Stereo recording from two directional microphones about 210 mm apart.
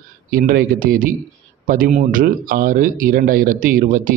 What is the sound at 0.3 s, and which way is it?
A man's voice, 40° right (ahead or behind).